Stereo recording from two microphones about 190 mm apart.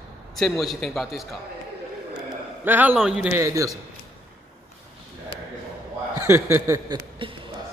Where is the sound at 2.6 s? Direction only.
10° right (ahead or behind).